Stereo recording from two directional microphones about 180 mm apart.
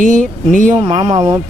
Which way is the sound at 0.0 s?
45° right (ahead or behind).